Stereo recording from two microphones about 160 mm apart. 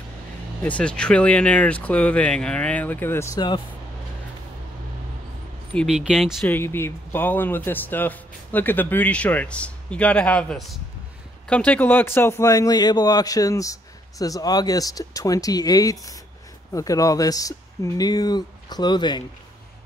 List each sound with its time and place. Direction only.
0.7 s a man's voice: 5° left (ahead or behind); by 3.6 s 25° left (ahead or behind)
5.8 s speech: 5° right (ahead or behind)
6.4 s a man's voice: 15° left (ahead or behind)